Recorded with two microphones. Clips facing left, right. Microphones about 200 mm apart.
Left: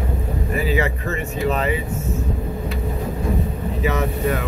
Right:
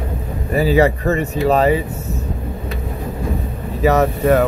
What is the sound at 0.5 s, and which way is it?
Speech, 35° right (ahead or behind).